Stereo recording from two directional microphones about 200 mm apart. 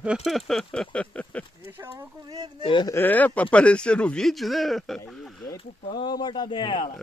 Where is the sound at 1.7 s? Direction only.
10° right (ahead or behind).